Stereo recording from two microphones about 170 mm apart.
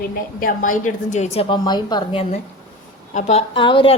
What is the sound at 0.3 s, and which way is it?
A woman's voice, 50° left (ahead or behind).